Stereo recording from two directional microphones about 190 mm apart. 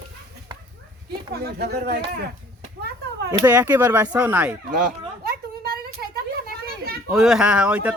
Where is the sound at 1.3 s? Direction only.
55° right (ahead or behind).